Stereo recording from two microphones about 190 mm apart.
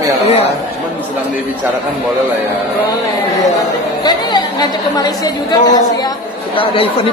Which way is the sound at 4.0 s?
20° left (ahead or behind).